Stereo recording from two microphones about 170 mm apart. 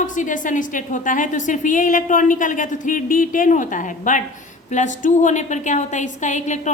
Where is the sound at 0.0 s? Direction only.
50° left (ahead or behind).